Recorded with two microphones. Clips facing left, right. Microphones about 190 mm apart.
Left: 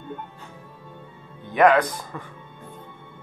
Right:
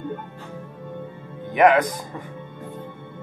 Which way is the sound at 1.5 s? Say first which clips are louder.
Right 1 dB; 15° right (ahead or behind).